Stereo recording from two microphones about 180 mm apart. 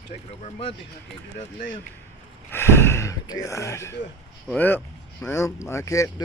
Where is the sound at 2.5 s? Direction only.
15° left (ahead or behind).